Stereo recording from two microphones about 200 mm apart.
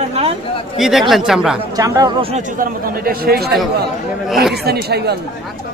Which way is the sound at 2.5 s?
45° right (ahead or behind).